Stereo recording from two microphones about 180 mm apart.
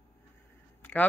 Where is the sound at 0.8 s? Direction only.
10° left (ahead or behind).